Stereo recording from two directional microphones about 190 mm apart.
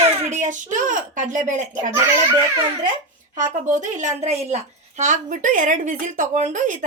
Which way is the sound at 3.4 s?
40° right (ahead or behind).